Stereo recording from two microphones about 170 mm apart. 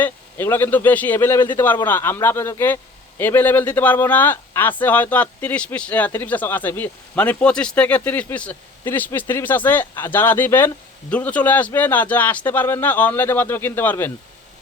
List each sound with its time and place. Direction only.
0.0 s speech: 15° left (ahead or behind)